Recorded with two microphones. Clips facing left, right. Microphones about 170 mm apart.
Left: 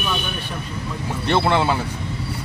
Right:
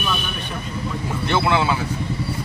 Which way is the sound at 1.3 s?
30° left (ahead or behind).